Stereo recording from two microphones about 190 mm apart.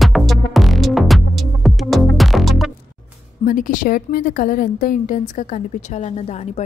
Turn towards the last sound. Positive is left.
turn(degrees=35)  # may be behind; listen again after turning